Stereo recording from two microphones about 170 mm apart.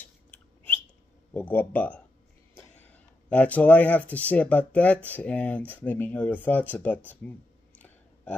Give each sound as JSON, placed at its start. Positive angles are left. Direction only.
{"t": 0.0, "sound": "a sound", "side_deg": 10}
{"t": 1.3, "sound": "speech", "side_deg": 10}
{"t": 7.2, "sound": "clicking", "side_deg": 10}